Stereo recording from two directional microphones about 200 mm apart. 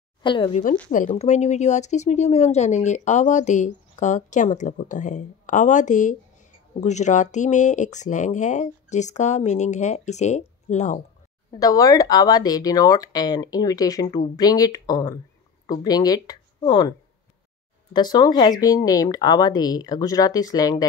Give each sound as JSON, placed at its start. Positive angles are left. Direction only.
{"t": 0.2, "sound": "speech", "side_deg": 25}
{"t": 0.9, "sound": "speech", "side_deg": 35}
{"t": 11.6, "sound": "speech", "side_deg": 20}
{"t": 17.9, "sound": "speech", "side_deg": 20}